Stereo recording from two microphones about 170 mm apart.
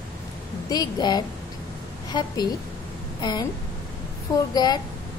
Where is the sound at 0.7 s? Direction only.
25° left (ahead or behind).